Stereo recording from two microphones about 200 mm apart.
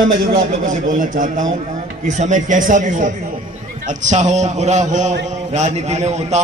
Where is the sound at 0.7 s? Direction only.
40° right (ahead or behind).